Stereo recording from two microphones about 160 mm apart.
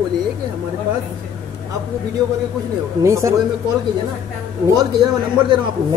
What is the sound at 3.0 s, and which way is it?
Speech, 20° right (ahead or behind).